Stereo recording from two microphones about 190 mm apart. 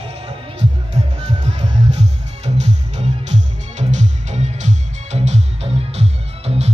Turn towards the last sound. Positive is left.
turn(degrees=-35)  # may be behind; listen again after turning